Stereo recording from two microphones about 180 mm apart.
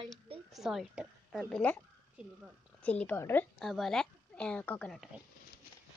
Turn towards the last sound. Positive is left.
turn(degrees=5)  # may be behind; listen again after turning